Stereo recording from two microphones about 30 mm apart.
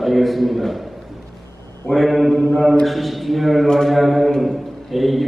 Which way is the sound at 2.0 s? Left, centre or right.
Centre.